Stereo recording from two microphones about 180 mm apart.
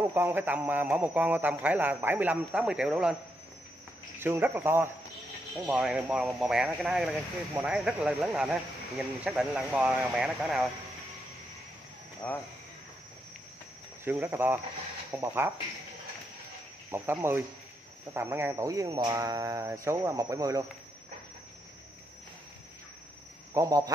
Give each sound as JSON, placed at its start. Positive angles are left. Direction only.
{"t": 0.1, "sound": "speech", "side_deg": -10}
{"t": 4.2, "sound": "speech", "side_deg": -10}
{"t": 12.2, "sound": "speech", "side_deg": 10}
{"t": 14.0, "sound": "speech", "side_deg": -10}
{"t": 16.9, "sound": "speech", "side_deg": -10}
{"t": 23.5, "sound": "speech", "side_deg": -20}